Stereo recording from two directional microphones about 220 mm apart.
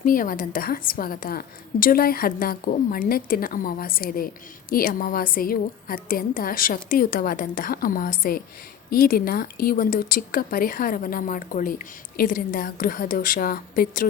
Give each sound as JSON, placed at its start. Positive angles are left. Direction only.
{"t": 0.0, "sound": "a woman's voice", "side_deg": 40}